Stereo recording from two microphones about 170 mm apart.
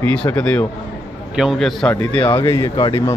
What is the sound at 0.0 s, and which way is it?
Speech, 10° left (ahead or behind).